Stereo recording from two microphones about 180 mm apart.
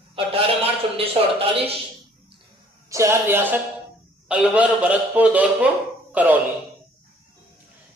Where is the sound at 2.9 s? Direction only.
15° right (ahead or behind).